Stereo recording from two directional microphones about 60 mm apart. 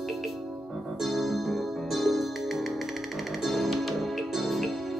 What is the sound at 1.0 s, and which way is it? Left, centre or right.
Keyboard, centre.